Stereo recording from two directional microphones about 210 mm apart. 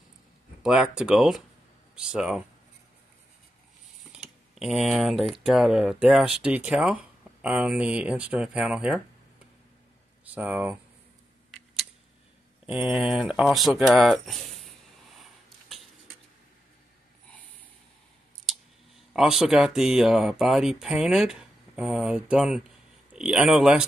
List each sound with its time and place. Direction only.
0.6 s speech: 5° right (ahead or behind)
4.1 s speech: 5° right (ahead or behind)
10.3 s speech: 5° right (ahead or behind)
12.6 s speech: 5° right (ahead or behind)
19.1 s speech: centre (ahead or behind)